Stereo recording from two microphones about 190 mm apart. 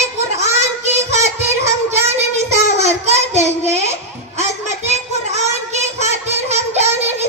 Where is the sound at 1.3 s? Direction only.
15° right (ahead or behind).